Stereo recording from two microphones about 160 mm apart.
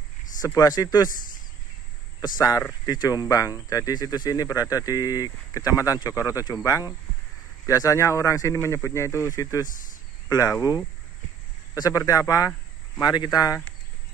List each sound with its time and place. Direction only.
0.5 s speech: 20° left (ahead or behind)
2.2 s speech: 25° left (ahead or behind)
11.7 s speech: 20° left (ahead or behind)